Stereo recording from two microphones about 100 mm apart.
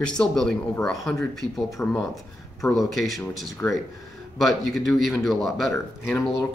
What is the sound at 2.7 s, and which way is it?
Speech, centre (ahead or behind).